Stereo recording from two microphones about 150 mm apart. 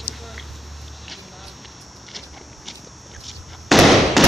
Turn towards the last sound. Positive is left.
turn(degrees=0)  # may be behind; listen again after turning